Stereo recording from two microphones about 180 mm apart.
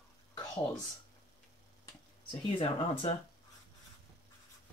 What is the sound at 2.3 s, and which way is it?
Speech, 30° left (ahead or behind).